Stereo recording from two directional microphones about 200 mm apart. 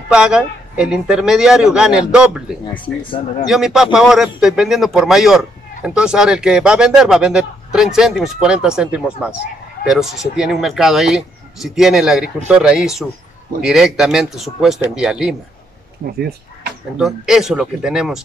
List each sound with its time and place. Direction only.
0.1 s a man's voice: 5° right (ahead or behind)
2.7 s speech: 25° left (ahead or behind)
3.4 s a man's voice: centre (ahead or behind)
16.9 s a man's voice: centre (ahead or behind)